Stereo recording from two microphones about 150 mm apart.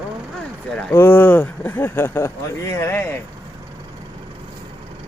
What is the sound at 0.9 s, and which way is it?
Speech, 15° left (ahead or behind).